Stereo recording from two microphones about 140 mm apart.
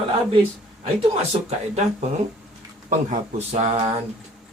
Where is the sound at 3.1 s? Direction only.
55° right (ahead or behind).